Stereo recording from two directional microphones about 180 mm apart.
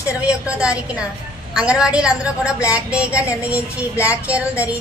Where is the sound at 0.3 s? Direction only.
5° right (ahead or behind).